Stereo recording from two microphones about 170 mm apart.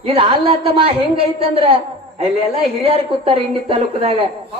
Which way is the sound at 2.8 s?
35° right (ahead or behind).